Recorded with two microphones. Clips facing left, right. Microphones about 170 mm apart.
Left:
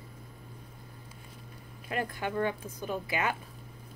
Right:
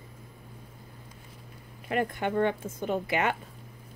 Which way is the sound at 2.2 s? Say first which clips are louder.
Right 4 dB; 55° right (ahead or behind).